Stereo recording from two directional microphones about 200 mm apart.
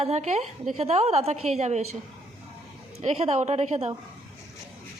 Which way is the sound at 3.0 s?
35° right (ahead or behind).